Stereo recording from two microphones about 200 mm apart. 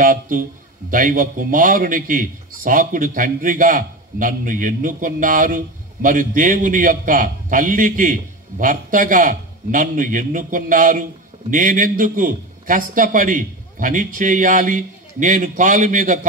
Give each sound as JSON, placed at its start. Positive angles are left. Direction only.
{"t": 0.0, "sound": "a man's voice", "side_deg": -40}